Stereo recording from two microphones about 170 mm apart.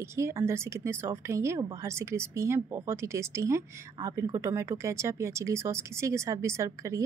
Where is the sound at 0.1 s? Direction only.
20° right (ahead or behind).